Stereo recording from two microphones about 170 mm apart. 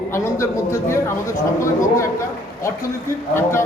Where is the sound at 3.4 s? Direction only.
15° left (ahead or behind).